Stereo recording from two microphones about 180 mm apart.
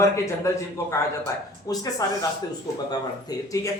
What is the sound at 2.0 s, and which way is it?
Speech, 20° left (ahead or behind).